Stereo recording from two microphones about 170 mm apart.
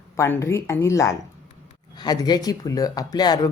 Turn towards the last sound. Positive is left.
turn(degrees=25)  # may be behind; listen again after turning